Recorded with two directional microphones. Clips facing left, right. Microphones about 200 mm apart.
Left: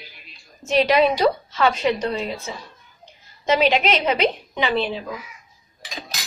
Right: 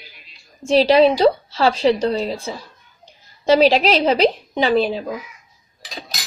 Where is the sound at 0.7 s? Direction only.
30° right (ahead or behind).